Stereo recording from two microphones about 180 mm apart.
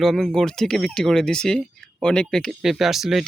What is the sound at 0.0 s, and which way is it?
Speech, centre (ahead or behind).